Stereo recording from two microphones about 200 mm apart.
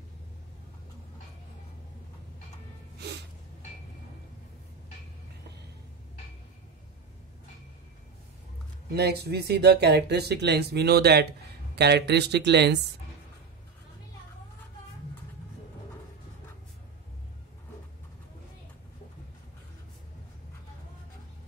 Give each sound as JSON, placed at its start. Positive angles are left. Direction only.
{"t": 8.9, "sound": "speech", "side_deg": -55}